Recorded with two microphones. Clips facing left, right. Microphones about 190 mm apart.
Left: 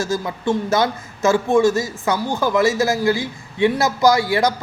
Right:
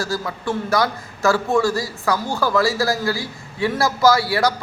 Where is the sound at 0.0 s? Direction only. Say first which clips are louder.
Left 3 dB; 20° left (ahead or behind).